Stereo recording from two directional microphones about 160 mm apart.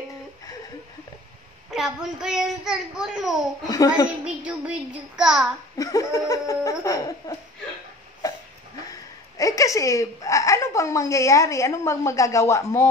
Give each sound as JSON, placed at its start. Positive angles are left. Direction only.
{"t": 1.7, "sound": "a child's voice", "side_deg": -5}
{"t": 3.6, "sound": "laughter", "side_deg": 20}
{"t": 4.2, "sound": "child singing", "side_deg": -10}
{"t": 5.8, "sound": "laughter", "side_deg": 20}
{"t": 8.2, "sound": "cough", "side_deg": 20}
{"t": 8.9, "sound": "speech", "side_deg": 20}